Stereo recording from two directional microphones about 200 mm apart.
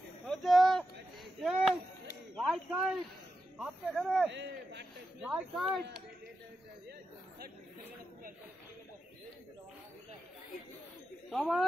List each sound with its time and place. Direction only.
0.3 s a sound: centre (ahead or behind)
2.3 s speech: centre (ahead or behind)
4.3 s a man's voice: 65° right (ahead or behind)
5.2 s speech: 5° right (ahead or behind)
11.2 s speech: centre (ahead or behind)